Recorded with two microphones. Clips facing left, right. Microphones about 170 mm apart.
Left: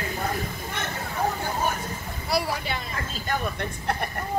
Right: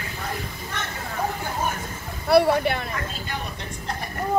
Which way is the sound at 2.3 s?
60° right (ahead or behind).